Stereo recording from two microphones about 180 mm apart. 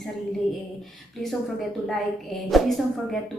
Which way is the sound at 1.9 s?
Centre (ahead or behind).